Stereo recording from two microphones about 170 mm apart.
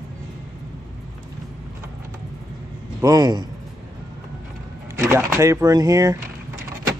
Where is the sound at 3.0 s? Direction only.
20° right (ahead or behind).